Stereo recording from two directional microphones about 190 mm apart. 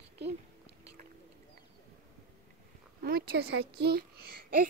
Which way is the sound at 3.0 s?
55° right (ahead or behind).